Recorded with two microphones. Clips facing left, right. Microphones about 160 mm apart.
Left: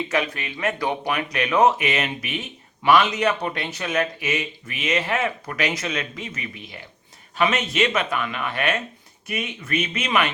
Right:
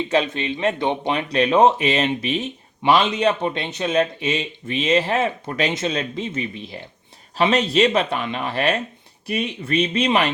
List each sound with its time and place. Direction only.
0.1 s speech: 25° right (ahead or behind)